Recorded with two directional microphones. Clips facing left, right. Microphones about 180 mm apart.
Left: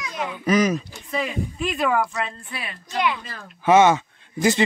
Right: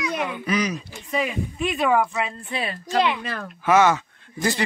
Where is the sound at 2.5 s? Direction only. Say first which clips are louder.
Right 7 dB; 30° right (ahead or behind).